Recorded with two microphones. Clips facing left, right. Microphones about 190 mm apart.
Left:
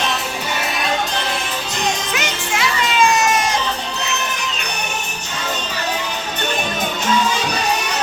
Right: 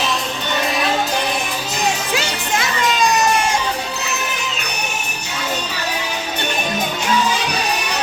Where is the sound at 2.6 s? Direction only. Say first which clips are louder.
Left 1 dB; 35° right (ahead or behind).